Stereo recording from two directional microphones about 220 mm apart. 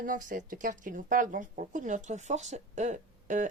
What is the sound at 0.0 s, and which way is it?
Speech, 35° right (ahead or behind).